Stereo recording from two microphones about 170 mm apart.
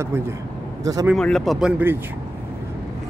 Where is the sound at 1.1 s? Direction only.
5° left (ahead or behind).